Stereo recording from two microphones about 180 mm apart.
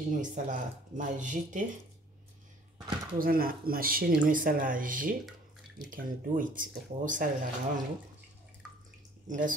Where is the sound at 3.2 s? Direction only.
55° right (ahead or behind).